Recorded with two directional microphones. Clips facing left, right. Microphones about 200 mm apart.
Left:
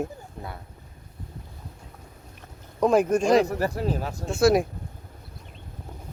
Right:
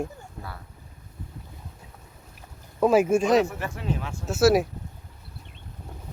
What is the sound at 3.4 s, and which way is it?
Speech, 40° left (ahead or behind).